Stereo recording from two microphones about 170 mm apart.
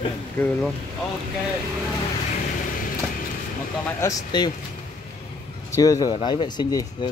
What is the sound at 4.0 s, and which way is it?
Speech, 20° left (ahead or behind).